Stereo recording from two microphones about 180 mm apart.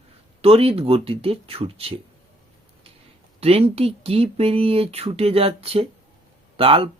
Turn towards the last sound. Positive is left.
turn(degrees=-30)  # may be behind; listen again after turning